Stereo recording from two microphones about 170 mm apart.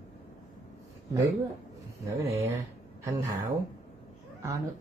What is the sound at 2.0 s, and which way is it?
Speech, 15° right (ahead or behind).